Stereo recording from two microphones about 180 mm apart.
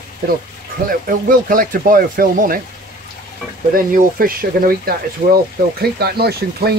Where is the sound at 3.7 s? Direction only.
50° right (ahead or behind).